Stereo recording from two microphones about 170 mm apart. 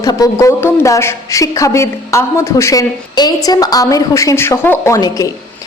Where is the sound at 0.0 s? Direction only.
20° left (ahead or behind).